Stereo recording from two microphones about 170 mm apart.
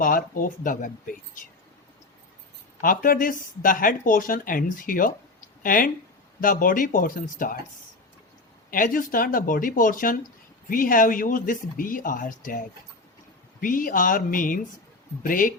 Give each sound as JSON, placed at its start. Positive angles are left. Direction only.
{"t": 0.0, "sound": "speech", "side_deg": 55}
{"t": 2.8, "sound": "speech", "side_deg": 55}
{"t": 8.7, "sound": "speech", "side_deg": 55}